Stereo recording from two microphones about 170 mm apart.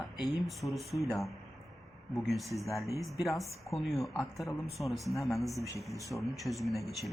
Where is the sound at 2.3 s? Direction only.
Centre (ahead or behind).